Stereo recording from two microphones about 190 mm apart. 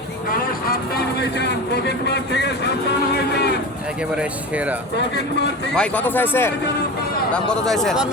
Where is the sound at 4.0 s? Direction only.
5° right (ahead or behind).